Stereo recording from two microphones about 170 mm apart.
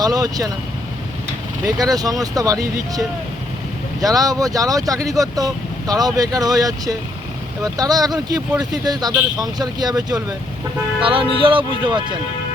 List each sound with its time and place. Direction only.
0.0 s speech: 20° right (ahead or behind)
1.6 s speech: 20° right (ahead or behind)
4.0 s speech: 20° right (ahead or behind)